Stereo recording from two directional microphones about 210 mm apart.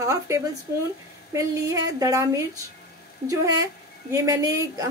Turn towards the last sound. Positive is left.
turn(degrees=-15)  # may be behind; listen again after turning